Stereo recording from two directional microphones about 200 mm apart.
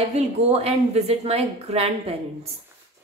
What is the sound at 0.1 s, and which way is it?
A woman's voice, 30° right (ahead or behind).